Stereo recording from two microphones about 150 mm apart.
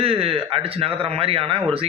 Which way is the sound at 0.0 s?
40° right (ahead or behind).